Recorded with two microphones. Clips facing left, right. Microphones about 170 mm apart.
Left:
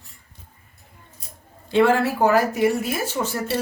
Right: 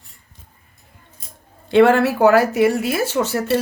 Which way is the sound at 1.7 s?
70° right (ahead or behind).